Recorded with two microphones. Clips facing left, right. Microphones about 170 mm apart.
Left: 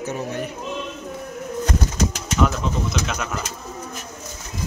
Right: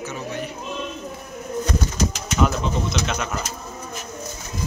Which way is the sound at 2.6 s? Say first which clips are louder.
Even; 5° left (ahead or behind).